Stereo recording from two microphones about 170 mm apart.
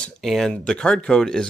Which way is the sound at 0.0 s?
Centre (ahead or behind).